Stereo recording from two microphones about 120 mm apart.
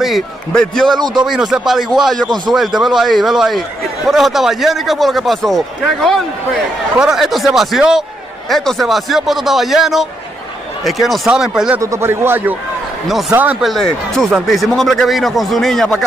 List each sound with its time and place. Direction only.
0.0 s a man's voice: centre (ahead or behind)
0.9 s speech: 35° right (ahead or behind)
1.7 s a man's voice: centre (ahead or behind)
11.8 s speech: 25° right (ahead or behind)
13.6 s a man's voice: centre (ahead or behind)